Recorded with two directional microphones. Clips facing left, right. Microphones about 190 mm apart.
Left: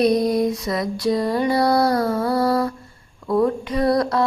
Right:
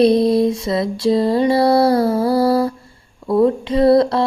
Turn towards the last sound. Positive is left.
turn(degrees=-25)  # may be behind; listen again after turning